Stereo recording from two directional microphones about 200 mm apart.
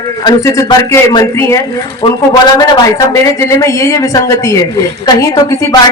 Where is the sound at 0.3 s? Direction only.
15° left (ahead or behind).